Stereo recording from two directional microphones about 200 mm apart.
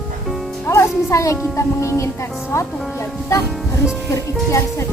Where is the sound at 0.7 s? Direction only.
15° left (ahead or behind).